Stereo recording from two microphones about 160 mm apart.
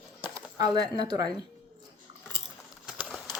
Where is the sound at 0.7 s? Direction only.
25° right (ahead or behind).